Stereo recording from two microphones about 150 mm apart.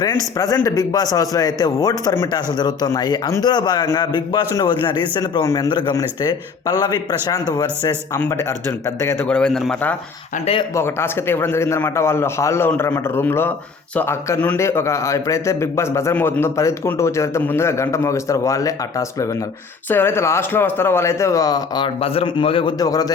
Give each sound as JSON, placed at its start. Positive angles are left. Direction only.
{"t": 0.3, "sound": "a man's voice", "side_deg": 25}
{"t": 10.4, "sound": "speech", "side_deg": 40}
{"t": 10.8, "sound": "a man's voice", "side_deg": 15}
{"t": 22.0, "sound": "speech", "side_deg": 40}
{"t": 22.8, "sound": "speech", "side_deg": 25}